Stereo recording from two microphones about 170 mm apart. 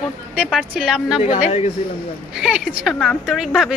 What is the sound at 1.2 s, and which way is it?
Speech, 40° left (ahead or behind).